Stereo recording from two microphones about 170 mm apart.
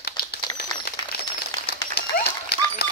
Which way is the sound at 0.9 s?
65° left (ahead or behind).